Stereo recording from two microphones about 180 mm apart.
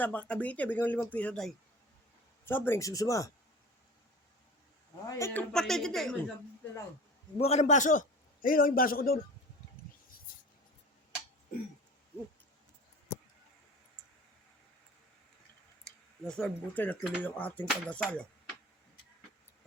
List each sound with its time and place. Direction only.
0.0 s speech: 10° left (ahead or behind)
5.0 s a woman's voice: 15° left (ahead or behind)
7.3 s a man's voice: 35° left (ahead or behind); by 9.1 s 55° left (ahead or behind)
15.8 s speech: 5° left (ahead or behind)